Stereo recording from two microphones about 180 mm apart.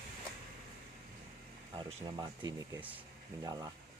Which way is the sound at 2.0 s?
20° right (ahead or behind).